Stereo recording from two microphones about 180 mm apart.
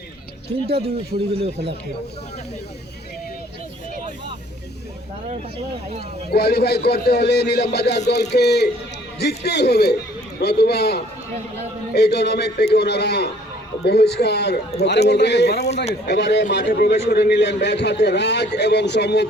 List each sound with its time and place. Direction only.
0.7 s a man's voice: 35° right (ahead or behind)
6.3 s a man's voice: 65° left (ahead or behind)
15.7 s speech: 35° left (ahead or behind)
16.0 s a man's voice: 75° left (ahead or behind)